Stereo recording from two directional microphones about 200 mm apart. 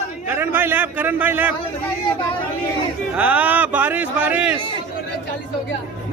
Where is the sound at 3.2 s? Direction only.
10° right (ahead or behind).